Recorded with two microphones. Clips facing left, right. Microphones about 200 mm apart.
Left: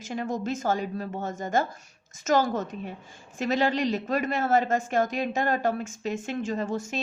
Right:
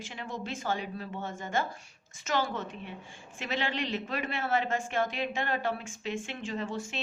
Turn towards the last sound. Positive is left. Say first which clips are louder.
# left 6 dB
turn(degrees=40)  # may be behind; listen again after turning